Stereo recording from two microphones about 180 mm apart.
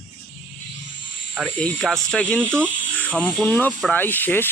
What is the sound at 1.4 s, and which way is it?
Speech, 5° left (ahead or behind).